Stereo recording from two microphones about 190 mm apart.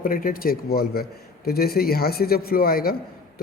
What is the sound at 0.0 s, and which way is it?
A man's voice, 50° left (ahead or behind).